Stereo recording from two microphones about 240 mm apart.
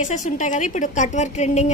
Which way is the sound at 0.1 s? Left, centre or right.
Left.